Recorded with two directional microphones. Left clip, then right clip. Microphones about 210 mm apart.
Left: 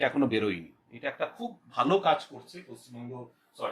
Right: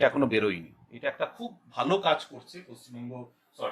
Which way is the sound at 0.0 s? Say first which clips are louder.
Right 3 dB; 20° right (ahead or behind).